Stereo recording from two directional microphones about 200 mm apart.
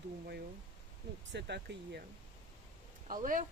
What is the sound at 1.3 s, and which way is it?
Speech, 60° right (ahead or behind).